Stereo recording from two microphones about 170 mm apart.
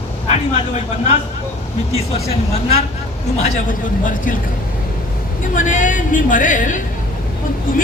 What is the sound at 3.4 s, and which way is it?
Speech, 50° left (ahead or behind).